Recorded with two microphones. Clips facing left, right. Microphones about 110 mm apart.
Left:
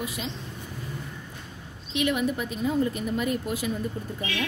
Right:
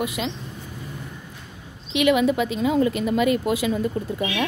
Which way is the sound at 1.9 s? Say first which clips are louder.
Right 7 dB; 90° right.